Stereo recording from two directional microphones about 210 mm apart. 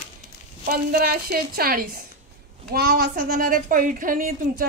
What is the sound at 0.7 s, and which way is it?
A woman's voice, 45° right (ahead or behind).